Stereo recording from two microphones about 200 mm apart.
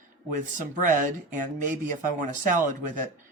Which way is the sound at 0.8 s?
40° right (ahead or behind).